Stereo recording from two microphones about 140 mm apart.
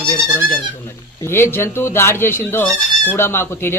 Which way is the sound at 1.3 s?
15° left (ahead or behind).